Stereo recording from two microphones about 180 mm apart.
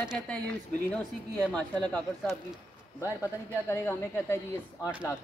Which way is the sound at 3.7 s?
15° left (ahead or behind).